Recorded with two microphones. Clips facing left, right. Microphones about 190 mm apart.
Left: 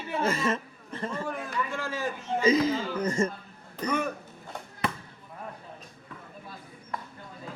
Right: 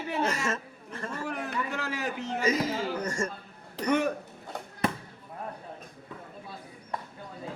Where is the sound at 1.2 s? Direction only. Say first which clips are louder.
Even; 70° right (ahead or behind).